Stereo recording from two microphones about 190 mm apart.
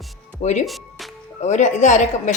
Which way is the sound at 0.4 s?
40° left (ahead or behind).